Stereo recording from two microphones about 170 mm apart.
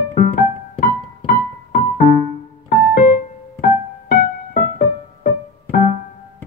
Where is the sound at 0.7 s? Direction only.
60° left (ahead or behind).